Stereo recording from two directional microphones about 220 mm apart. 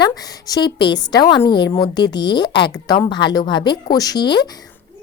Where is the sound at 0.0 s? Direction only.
15° left (ahead or behind).